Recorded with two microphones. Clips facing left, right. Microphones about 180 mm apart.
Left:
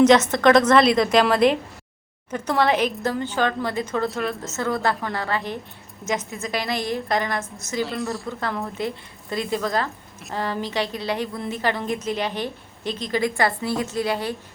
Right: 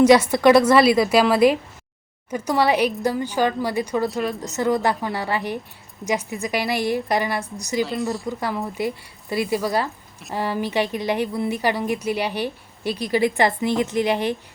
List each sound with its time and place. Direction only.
0.0 s a woman's voice: 10° right (ahead or behind)
4.1 s speech: centre (ahead or behind)
4.4 s a woman's voice: 15° right (ahead or behind)
7.9 s speech: centre (ahead or behind)
8.3 s a woman's voice: 10° right (ahead or behind)